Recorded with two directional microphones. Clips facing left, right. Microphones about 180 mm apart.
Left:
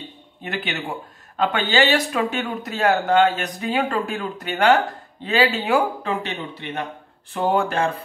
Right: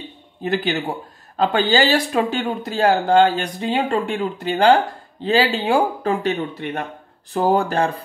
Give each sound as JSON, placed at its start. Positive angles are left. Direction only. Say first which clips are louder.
{"t": 0.4, "sound": "speech", "louder": "right 7 dB", "side_deg": -35}
{"t": 6.2, "sound": "speech", "louder": "right 8 dB", "side_deg": -50}
{"t": 7.3, "sound": "speech", "louder": "right 3 dB", "side_deg": -35}